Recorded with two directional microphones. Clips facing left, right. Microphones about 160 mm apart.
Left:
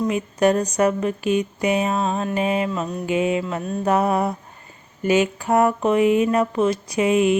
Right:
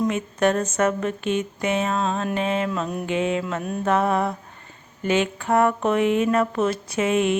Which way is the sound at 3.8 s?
20° left (ahead or behind).